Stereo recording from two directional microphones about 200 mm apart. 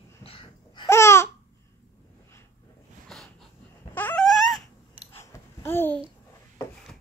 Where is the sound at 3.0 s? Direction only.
Centre (ahead or behind).